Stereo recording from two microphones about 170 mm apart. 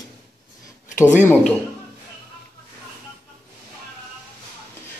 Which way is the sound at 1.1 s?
10° left (ahead or behind).